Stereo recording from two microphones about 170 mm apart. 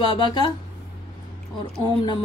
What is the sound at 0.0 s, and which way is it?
Mantra, 25° left (ahead or behind).